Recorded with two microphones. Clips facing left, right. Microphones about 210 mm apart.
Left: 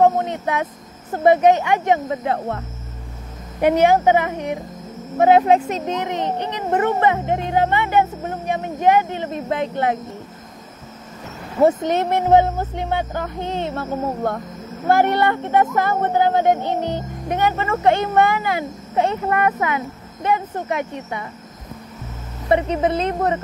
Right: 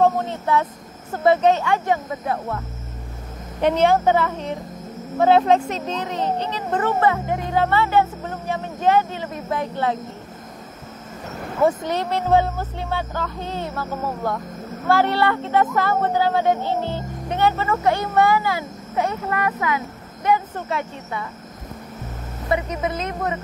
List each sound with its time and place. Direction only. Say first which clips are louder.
0.0 s speech: left 2 dB; 15° left (ahead or behind)
2.3 s speech: left 2 dB; 40° left (ahead or behind)
3.6 s speech: left 2 dB; 15° left (ahead or behind)
11.6 s speech: left 4 dB; 20° left (ahead or behind)
22.5 s speech: left 5 dB; 30° left (ahead or behind)